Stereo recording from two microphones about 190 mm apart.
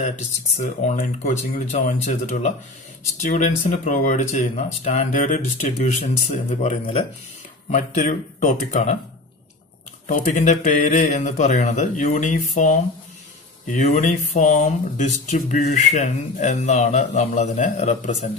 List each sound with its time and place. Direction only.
0.6 s speech: 40° left (ahead or behind)
10.0 s speech: 40° left (ahead or behind)